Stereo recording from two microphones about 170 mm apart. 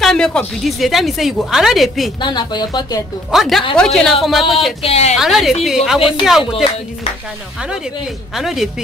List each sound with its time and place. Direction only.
0.0 s a woman's voice: 5° left (ahead or behind)
2.2 s speech: 25° left (ahead or behind)
3.3 s a woman's voice: centre (ahead or behind)
4.8 s speech: 35° left (ahead or behind)
5.1 s a woman's voice: centre (ahead or behind)
5.9 s speech: 30° left (ahead or behind)
8.4 s a woman's voice: centre (ahead or behind)